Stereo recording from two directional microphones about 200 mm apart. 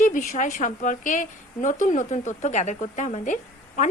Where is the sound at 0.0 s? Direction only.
40° left (ahead or behind).